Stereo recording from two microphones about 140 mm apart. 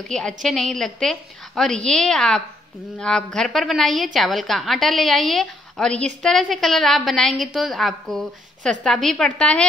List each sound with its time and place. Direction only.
0.1 s a woman's voice: 5° left (ahead or behind)